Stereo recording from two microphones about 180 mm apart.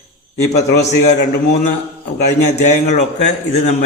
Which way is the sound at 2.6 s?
40° left (ahead or behind).